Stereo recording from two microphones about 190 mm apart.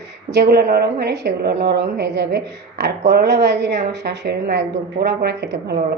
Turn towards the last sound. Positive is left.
turn(degrees=-60)  # may be behind; listen again after turning